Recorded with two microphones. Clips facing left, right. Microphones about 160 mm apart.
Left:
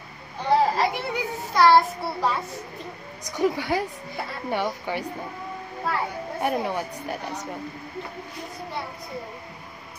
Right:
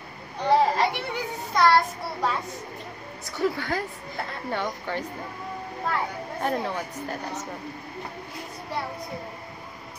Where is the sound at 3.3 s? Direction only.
15° left (ahead or behind).